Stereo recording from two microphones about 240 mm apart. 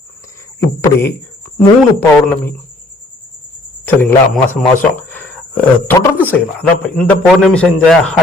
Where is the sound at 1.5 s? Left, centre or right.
Centre.